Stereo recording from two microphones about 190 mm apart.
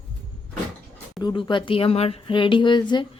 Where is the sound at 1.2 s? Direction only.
25° left (ahead or behind).